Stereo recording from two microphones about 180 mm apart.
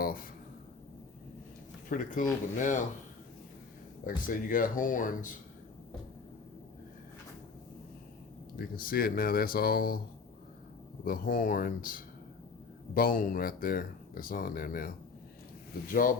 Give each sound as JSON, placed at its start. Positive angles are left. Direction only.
{"t": 0.0, "sound": "a sound", "side_deg": 50}
{"t": 1.9, "sound": "speech", "side_deg": 45}
{"t": 4.0, "sound": "speech", "side_deg": 50}
{"t": 8.5, "sound": "speech", "side_deg": 55}
{"t": 11.0, "sound": "speech", "side_deg": 50}
{"t": 15.9, "sound": "speech", "side_deg": 50}